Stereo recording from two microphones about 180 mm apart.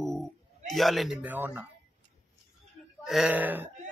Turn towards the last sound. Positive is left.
turn(degrees=-10)  # may be behind; listen again after turning